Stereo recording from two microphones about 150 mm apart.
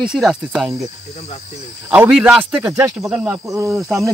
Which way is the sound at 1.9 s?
5° right (ahead or behind).